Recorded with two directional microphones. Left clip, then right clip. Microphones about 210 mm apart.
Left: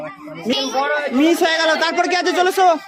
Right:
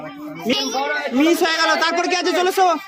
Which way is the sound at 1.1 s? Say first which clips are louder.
Even; 5° left (ahead or behind).